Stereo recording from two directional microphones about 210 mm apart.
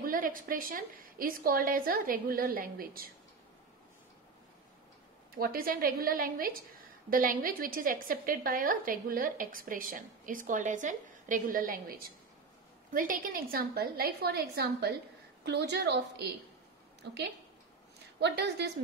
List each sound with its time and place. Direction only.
0.0 s a woman's voice: 40° right (ahead or behind)
5.3 s a woman's voice: 45° right (ahead or behind)
18.2 s a woman's voice: 50° right (ahead or behind)